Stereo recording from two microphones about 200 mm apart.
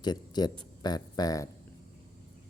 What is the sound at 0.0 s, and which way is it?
Speech, 20° left (ahead or behind).